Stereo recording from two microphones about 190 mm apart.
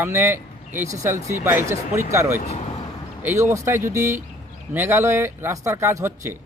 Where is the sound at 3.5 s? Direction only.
15° right (ahead or behind).